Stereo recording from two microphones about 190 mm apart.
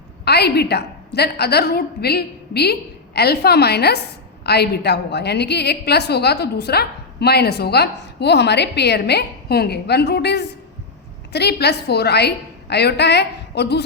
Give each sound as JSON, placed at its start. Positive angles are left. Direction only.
{"t": 0.3, "sound": "a woman's voice", "side_deg": 60}